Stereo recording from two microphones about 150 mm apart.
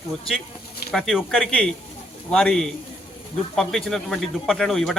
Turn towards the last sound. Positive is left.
turn(degrees=0)  # may be behind; listen again after turning